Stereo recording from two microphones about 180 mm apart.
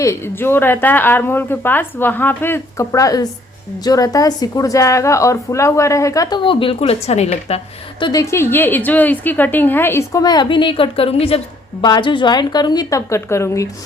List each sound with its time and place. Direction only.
0.0 s a woman's voice: 15° left (ahead or behind); by 7.6 s 35° left (ahead or behind)
8.0 s a woman's voice: 20° left (ahead or behind)